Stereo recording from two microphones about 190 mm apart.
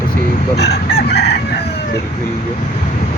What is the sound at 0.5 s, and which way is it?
Chicken, 60° left (ahead or behind).